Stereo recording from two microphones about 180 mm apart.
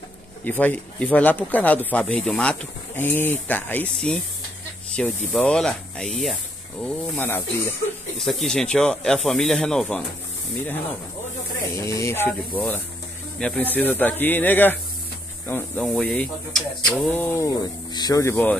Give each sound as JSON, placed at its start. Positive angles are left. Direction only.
{"t": 0.5, "sound": "speech", "side_deg": 10}
{"t": 6.8, "sound": "speech", "side_deg": 10}
{"t": 8.2, "sound": "speech", "side_deg": 0}
{"t": 11.7, "sound": "speech", "side_deg": 20}
{"t": 17.1, "sound": "speech", "side_deg": 10}